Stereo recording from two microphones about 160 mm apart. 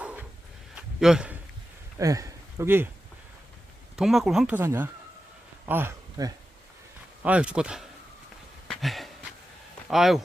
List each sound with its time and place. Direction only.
0.0 s dog: 10° right (ahead or behind)
0.8 s a sound: 5° right (ahead or behind)
2.0 s speech: 20° right (ahead or behind)
3.9 s speech: centre (ahead or behind); by 6.3 s 20° right (ahead or behind)
7.2 s speech: 10° right (ahead or behind)
8.6 s a sound: centre (ahead or behind)
9.9 s speech: centre (ahead or behind)